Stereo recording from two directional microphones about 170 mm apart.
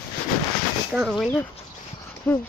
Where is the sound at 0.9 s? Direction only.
Centre (ahead or behind).